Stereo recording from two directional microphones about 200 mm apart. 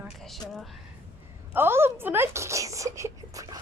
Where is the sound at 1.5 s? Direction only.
10° right (ahead or behind).